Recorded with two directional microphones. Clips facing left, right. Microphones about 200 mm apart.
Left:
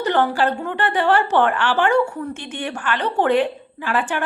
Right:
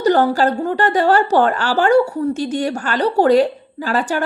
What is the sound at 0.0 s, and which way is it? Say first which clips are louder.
A woman's voice: right 4 dB; 40° right (ahead or behind).